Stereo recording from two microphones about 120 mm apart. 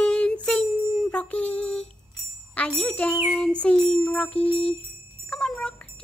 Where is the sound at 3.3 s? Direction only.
5° left (ahead or behind).